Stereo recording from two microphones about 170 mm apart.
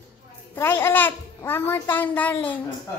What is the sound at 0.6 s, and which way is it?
A child's voice, 15° left (ahead or behind).